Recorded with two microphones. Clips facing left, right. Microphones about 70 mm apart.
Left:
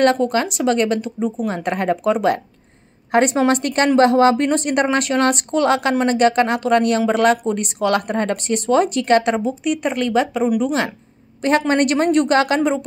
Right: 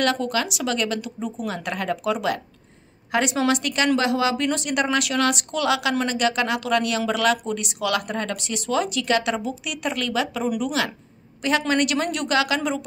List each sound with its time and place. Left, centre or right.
0.0 s speech: left